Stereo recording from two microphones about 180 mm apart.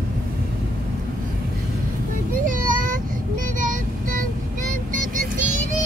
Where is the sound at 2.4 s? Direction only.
50° right (ahead or behind).